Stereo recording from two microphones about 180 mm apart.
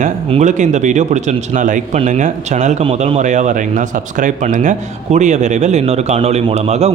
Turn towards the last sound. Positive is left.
turn(degrees=-35)  # may be behind; listen again after turning